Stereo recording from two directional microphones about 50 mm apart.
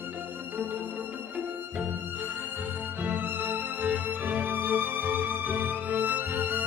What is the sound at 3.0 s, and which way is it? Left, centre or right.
Music, right.